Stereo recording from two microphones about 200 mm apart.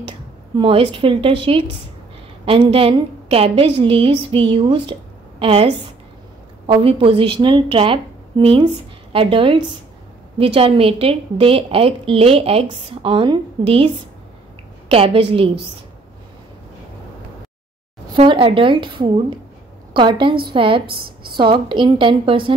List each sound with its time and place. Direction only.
0.6 s a woman's voice: 25° right (ahead or behind)
6.7 s a woman's voice: 25° right (ahead or behind)
14.9 s a woman's voice: 30° right (ahead or behind)
18.1 s a woman's voice: 25° right (ahead or behind)